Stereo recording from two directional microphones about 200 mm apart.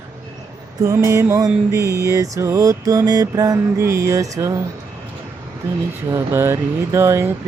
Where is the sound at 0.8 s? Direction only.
15° right (ahead or behind).